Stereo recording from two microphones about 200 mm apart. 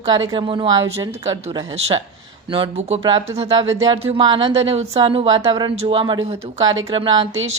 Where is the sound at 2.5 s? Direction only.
25° right (ahead or behind).